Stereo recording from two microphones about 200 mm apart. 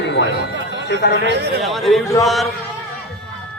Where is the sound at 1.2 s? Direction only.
55° right (ahead or behind).